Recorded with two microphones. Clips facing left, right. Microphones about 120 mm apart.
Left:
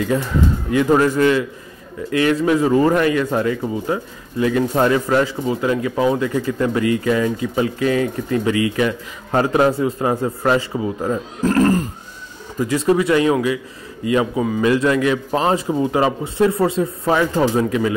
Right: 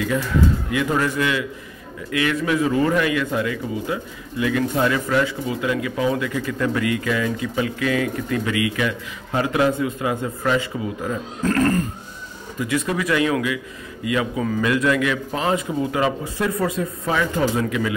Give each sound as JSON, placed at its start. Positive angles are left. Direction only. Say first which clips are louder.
{"t": 0.7, "sound": "speech", "louder": "left 6 dB", "side_deg": 35}